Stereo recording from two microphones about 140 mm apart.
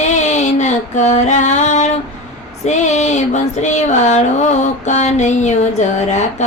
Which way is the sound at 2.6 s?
55° left (ahead or behind).